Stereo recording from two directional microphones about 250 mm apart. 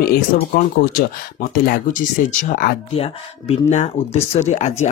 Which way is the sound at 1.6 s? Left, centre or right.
Left.